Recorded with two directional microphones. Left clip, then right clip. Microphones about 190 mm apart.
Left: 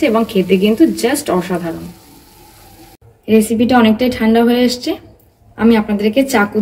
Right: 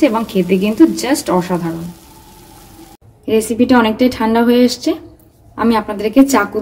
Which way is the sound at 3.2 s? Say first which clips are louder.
Left 1 dB; 50° right (ahead or behind).